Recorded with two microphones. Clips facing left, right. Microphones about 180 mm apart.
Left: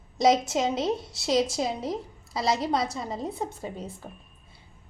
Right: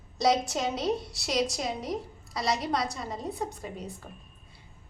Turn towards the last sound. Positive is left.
turn(degrees=25)  # may be behind; listen again after turning